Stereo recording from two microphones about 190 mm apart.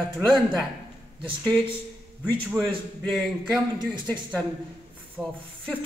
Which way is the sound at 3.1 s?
Centre (ahead or behind).